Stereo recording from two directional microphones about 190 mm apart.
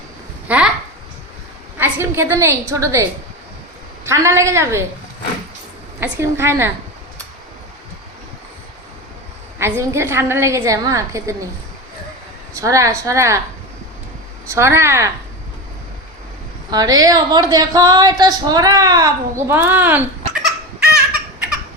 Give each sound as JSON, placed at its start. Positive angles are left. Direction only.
{"t": 0.4, "sound": "speech", "side_deg": -5}
{"t": 1.8, "sound": "a woman's voice", "side_deg": -10}
{"t": 6.0, "sound": "a woman's voice", "side_deg": -15}
{"t": 9.6, "sound": "a woman's voice", "side_deg": -15}
{"t": 12.5, "sound": "a woman's voice", "side_deg": -15}
{"t": 14.5, "sound": "a woman's voice", "side_deg": -15}
{"t": 16.6, "sound": "a woman's voice", "side_deg": -20}